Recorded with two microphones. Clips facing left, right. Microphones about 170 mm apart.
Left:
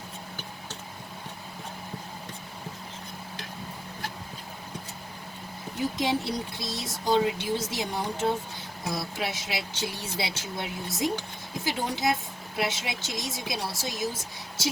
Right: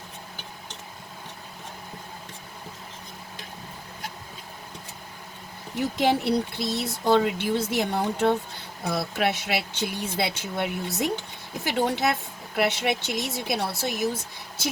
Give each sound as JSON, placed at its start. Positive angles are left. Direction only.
{"t": 6.0, "sound": "speech", "side_deg": -60}